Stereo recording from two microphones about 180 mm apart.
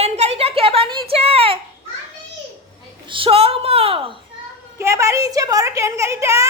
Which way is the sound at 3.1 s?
30° right (ahead or behind).